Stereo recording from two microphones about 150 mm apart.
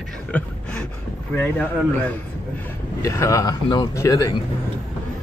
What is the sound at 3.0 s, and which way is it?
Speech, 20° left (ahead or behind).